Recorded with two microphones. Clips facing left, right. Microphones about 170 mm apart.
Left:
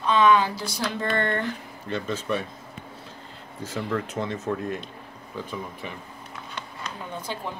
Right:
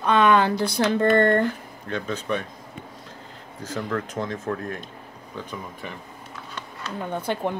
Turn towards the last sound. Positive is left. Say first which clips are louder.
# right 7 dB
turn(degrees=-55)  # may be behind; listen again after turning